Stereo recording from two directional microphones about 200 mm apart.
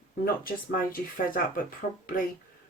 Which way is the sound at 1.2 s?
45° left (ahead or behind).